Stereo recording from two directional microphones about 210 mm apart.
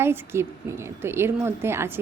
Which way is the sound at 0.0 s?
10° right (ahead or behind).